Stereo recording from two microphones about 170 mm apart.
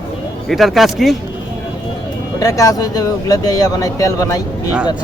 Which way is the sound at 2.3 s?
20° left (ahead or behind).